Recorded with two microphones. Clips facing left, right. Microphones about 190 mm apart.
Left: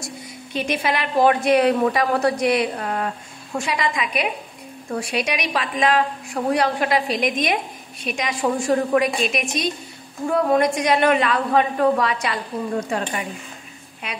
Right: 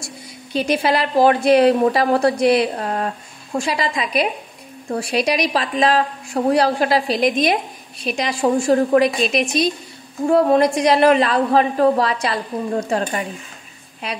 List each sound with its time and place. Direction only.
0.5 s a woman's voice: 35° right (ahead or behind)